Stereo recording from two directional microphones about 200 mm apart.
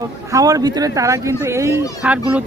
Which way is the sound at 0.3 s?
15° right (ahead or behind).